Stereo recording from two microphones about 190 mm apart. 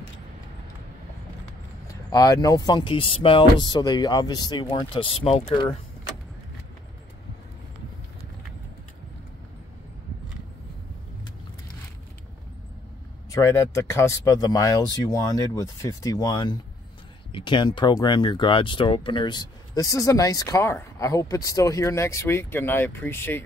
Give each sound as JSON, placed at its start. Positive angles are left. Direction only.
{"t": 2.0, "sound": "speech", "side_deg": 20}
{"t": 13.3, "sound": "speech", "side_deg": 15}